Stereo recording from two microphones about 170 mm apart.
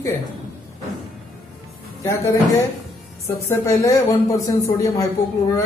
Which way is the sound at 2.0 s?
15° left (ahead or behind).